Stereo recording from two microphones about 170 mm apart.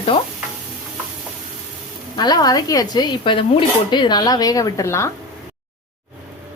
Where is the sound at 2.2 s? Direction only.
25° left (ahead or behind).